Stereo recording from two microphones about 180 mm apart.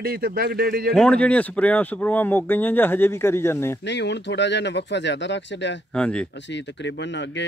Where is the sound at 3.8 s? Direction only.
75° left (ahead or behind).